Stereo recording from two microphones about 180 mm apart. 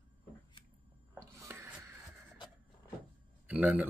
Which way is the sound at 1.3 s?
15° right (ahead or behind).